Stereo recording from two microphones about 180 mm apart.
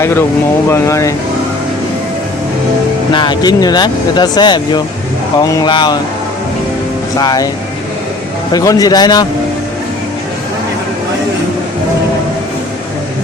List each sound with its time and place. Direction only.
0.0 s speech: 10° left (ahead or behind)
3.1 s speech: 25° left (ahead or behind)
7.2 s speech: 20° left (ahead or behind)
8.5 s speech: 20° left (ahead or behind)